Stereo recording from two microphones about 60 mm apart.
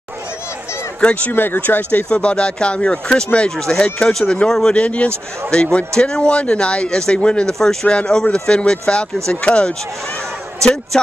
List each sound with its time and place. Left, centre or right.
1.3 s a man's voice: left; by 4.7 s centre
4.7 s a man's voice: left